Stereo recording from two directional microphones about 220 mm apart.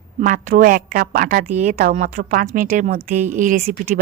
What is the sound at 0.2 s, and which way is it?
Speech, 40° right (ahead or behind).